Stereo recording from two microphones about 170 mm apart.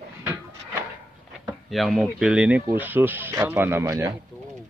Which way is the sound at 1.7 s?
Centre (ahead or behind).